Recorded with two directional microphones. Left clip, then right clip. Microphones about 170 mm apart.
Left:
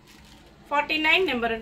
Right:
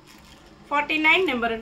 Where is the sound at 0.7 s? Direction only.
10° right (ahead or behind).